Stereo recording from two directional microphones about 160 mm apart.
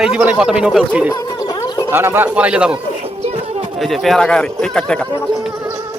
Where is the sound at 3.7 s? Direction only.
Centre (ahead or behind).